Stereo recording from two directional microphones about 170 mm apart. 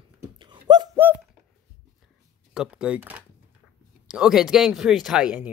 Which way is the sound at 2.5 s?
5° right (ahead or behind).